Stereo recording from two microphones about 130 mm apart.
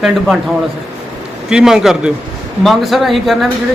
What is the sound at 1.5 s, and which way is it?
A man's voice, 5° right (ahead or behind).